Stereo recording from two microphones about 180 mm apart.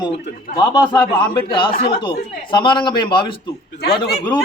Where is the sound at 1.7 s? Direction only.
60° left (ahead or behind).